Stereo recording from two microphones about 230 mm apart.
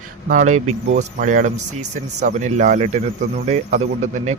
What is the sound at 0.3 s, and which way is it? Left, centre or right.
Speech, right.